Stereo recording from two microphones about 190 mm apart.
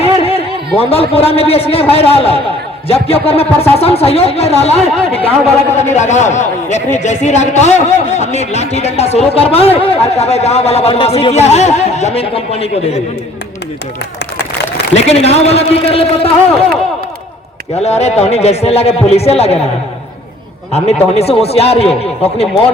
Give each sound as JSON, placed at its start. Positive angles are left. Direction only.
{"t": 0.0, "sound": "a man's voice", "side_deg": 30}
{"t": 14.9, "sound": "speech", "side_deg": 35}
{"t": 17.7, "sound": "speech", "side_deg": 35}
{"t": 20.7, "sound": "speech", "side_deg": 35}